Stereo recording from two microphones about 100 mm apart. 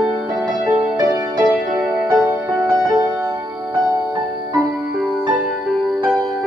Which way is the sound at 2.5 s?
35° right (ahead or behind).